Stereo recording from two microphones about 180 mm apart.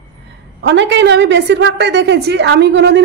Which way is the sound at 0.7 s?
75° right (ahead or behind).